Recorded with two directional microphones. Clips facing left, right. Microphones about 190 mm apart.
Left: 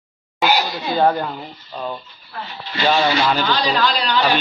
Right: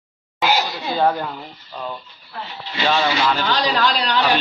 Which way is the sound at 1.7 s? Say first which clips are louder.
Left 2 dB; 15° left (ahead or behind).